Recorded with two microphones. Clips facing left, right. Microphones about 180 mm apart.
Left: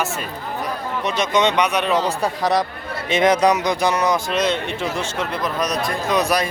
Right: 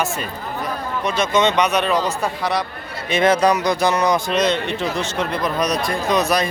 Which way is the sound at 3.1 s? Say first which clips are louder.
Even; 20° left (ahead or behind).